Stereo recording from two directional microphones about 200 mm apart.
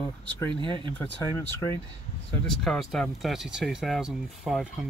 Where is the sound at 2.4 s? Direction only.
5° left (ahead or behind).